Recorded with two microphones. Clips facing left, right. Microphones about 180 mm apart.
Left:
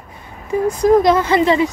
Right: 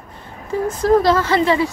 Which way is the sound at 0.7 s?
15° left (ahead or behind).